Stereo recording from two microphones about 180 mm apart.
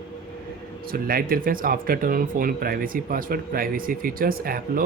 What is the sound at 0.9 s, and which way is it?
Speech, 55° right (ahead or behind).